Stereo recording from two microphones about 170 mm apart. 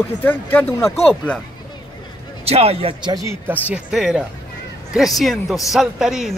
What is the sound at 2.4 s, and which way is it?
Speech, 35° right (ahead or behind).